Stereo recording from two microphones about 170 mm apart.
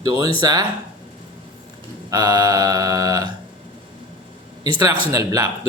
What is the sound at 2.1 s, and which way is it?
A man's voice, 20° right (ahead or behind).